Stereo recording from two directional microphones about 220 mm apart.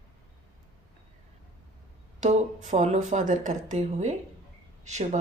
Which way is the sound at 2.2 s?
35° right (ahead or behind).